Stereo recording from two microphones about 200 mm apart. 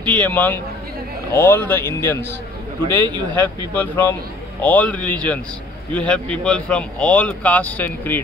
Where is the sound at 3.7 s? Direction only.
10° left (ahead or behind).